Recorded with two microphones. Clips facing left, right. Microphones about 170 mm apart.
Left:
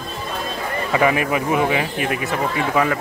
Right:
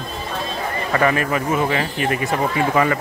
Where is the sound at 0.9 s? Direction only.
10° left (ahead or behind).